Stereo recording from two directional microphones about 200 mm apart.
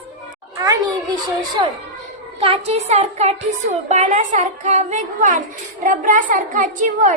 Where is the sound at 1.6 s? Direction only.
20° right (ahead or behind).